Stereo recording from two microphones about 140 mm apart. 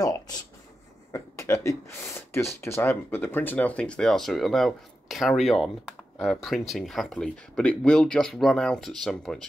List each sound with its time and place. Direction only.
0.0 s speech: 25° left (ahead or behind); by 9.5 s 5° left (ahead or behind)